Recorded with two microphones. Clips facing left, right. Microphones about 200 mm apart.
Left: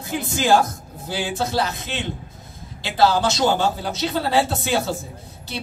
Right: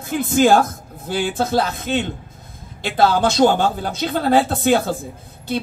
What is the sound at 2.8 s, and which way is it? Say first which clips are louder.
A man's voice: right 2 dB; 55° right (ahead or behind).